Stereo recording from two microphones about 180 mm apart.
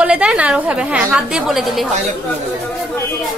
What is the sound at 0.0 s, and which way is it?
A woman's voice, 5° right (ahead or behind).